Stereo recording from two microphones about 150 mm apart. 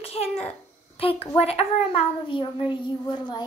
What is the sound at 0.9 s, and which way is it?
A child's voice, 40° left (ahead or behind).